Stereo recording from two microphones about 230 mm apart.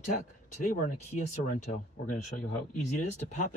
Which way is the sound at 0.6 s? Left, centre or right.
Left.